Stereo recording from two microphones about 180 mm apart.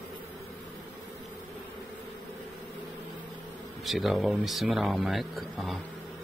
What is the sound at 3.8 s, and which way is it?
Speech, centre (ahead or behind).